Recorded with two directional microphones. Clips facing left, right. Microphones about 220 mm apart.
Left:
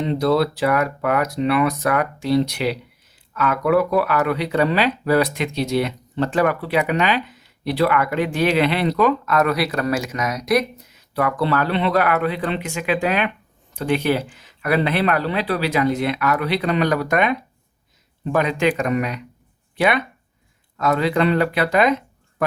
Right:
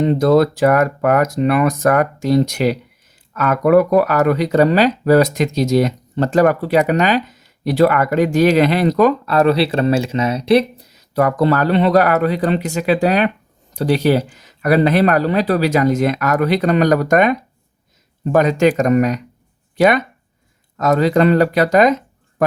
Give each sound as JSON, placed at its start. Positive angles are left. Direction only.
{"t": 0.0, "sound": "speech", "side_deg": -45}